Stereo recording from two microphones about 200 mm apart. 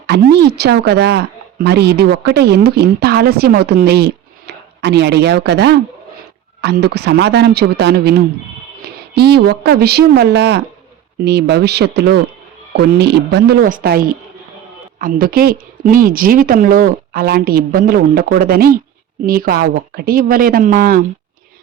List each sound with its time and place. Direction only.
0.1 s a woman's voice: 55° right (ahead or behind)
9.1 s a woman's voice: 55° right (ahead or behind)